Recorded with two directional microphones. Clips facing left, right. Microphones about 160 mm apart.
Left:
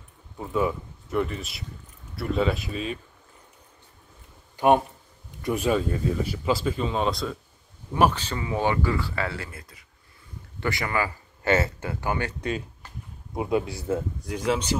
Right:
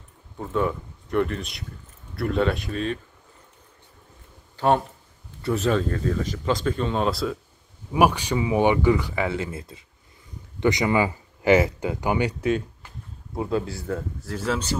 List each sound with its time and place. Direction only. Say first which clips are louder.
0.4 s speech: right 1 dB; 5° left (ahead or behind)
4.6 s speech: left 1 dB; 15° left (ahead or behind); by 12.4 s 15° right (ahead or behind)
13.4 s speech: even; 15° left (ahead or behind)